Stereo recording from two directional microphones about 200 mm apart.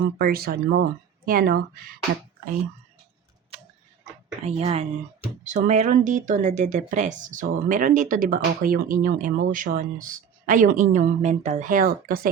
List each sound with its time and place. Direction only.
0.2 s speech: 50° right (ahead or behind)
3.5 s tick-tock: 30° right (ahead or behind)
4.4 s speech: 30° right (ahead or behind); by 12.3 s 45° right (ahead or behind)